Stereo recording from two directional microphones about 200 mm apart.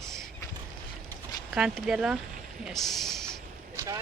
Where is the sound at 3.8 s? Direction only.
15° right (ahead or behind).